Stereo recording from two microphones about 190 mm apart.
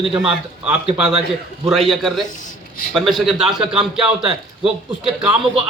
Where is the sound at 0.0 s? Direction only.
5° right (ahead or behind).